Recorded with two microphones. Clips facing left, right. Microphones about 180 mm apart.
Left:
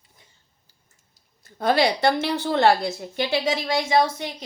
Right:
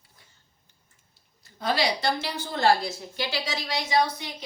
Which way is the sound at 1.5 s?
55° left (ahead or behind).